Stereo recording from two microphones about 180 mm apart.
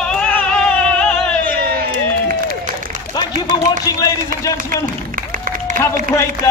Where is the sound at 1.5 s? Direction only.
55° right (ahead or behind).